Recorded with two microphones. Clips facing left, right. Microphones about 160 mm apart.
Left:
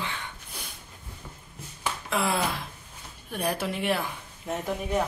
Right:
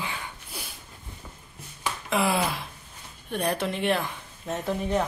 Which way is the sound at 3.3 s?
5° left (ahead or behind).